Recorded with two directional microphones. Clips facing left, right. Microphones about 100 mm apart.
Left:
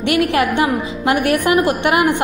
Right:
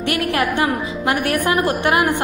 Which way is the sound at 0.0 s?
25° left (ahead or behind).